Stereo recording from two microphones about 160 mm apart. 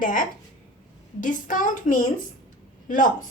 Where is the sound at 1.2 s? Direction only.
55° left (ahead or behind).